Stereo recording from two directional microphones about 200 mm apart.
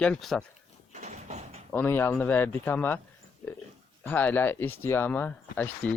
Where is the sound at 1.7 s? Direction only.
10° left (ahead or behind).